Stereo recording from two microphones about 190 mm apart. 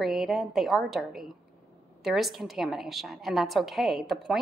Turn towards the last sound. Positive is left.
turn(degrees=0)  # may be behind; listen again after turning